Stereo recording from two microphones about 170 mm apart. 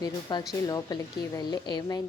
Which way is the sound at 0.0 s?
25° left (ahead or behind).